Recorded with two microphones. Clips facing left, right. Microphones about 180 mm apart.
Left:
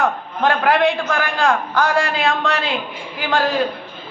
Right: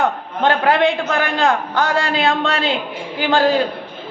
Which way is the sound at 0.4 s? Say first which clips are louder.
Right 1 dB; 25° right (ahead or behind).